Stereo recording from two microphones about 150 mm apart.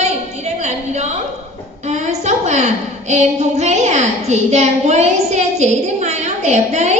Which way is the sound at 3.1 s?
50° right (ahead or behind).